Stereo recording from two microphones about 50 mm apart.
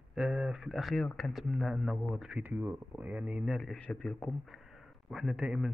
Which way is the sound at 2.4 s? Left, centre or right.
Right.